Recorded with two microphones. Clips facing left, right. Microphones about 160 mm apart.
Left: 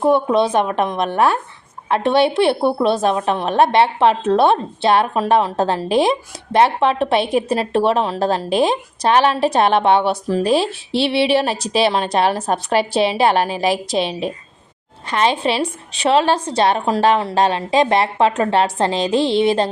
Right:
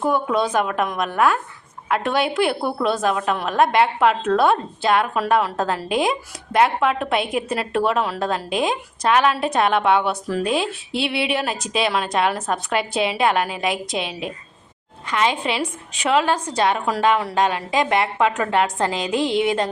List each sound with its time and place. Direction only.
0.0 s a woman's voice: 30° left (ahead or behind)